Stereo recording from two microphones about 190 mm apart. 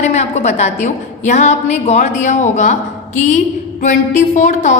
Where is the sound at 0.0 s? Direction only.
35° left (ahead or behind).